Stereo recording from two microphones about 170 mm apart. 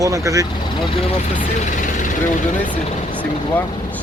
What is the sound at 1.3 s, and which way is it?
Speech, 50° left (ahead or behind).